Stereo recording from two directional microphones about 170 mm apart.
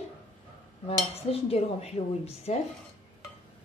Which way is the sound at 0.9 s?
35° left (ahead or behind).